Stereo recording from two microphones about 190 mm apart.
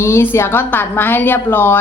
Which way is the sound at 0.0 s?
15° left (ahead or behind).